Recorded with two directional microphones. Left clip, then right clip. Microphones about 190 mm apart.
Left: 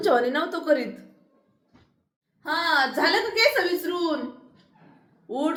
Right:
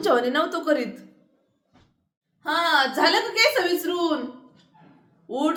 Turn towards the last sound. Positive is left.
turn(degrees=-15)  # may be behind; listen again after turning